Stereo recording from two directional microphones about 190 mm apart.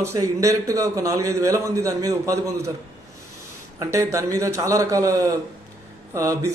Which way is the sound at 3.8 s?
15° right (ahead or behind).